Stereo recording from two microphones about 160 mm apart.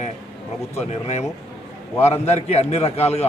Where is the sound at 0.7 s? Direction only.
40° left (ahead or behind).